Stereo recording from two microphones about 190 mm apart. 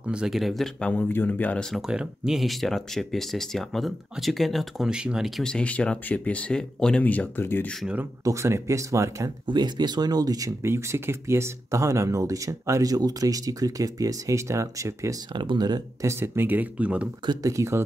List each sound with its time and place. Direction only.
0.0 s speech: 5° right (ahead or behind); by 7.7 s 10° left (ahead or behind)
7.8 s speech: 10° right (ahead or behind)
17.3 s speech: 15° right (ahead or behind)